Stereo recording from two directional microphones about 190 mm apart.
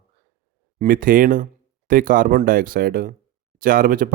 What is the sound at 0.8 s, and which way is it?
Speech, 45° right (ahead or behind).